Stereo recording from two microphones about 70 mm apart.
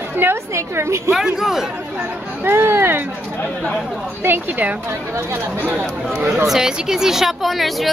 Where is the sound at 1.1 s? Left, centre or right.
Centre.